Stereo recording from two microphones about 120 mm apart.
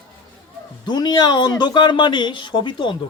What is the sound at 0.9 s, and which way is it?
Speech, 40° left (ahead or behind).